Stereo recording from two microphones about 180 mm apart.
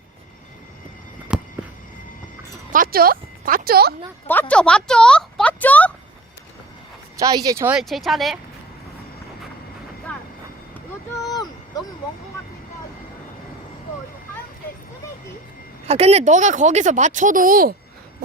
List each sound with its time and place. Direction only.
1.3 s a sound: 5° right (ahead or behind)
2.7 s speech: 55° right (ahead or behind)
4.3 s speech: 10° left (ahead or behind)
7.2 s speech: 20° right (ahead or behind)
7.8 s speech: centre (ahead or behind)
10.1 s vehicle: 5° left (ahead or behind)
15.9 s speech: 35° right (ahead or behind); by 17.7 s 50° right (ahead or behind)